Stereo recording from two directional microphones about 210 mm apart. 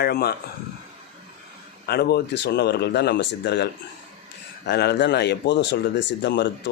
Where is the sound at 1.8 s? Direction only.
50° left (ahead or behind).